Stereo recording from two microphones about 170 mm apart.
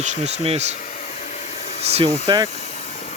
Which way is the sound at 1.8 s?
35° right (ahead or behind).